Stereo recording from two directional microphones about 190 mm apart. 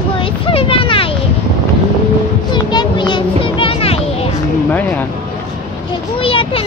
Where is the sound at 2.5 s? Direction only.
25° left (ahead or behind).